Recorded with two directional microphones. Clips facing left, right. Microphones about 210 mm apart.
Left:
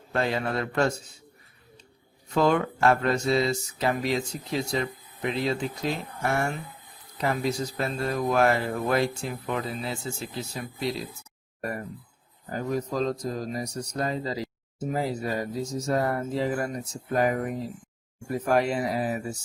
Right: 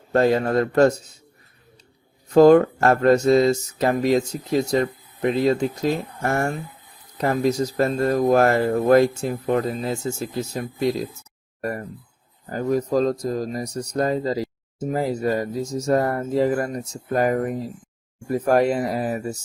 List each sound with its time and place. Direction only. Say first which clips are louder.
0.1 s a man's voice: right 9 dB; 40° right (ahead or behind)
2.3 s speech: right 11 dB; 40° right (ahead or behind)